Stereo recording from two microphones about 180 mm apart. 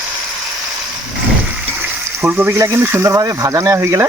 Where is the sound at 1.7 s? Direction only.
10° right (ahead or behind).